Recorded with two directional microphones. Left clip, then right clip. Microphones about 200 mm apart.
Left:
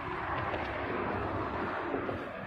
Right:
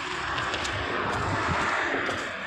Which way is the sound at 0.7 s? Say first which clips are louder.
Right 6 dB; 15° right (ahead or behind).